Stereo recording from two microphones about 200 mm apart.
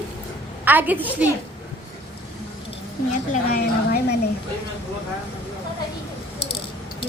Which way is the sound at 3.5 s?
50° left (ahead or behind).